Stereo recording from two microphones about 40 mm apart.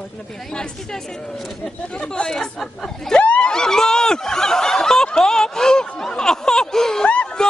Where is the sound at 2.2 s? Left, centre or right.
Centre.